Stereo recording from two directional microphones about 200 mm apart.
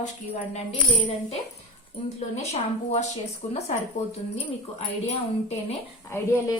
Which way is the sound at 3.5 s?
30° left (ahead or behind).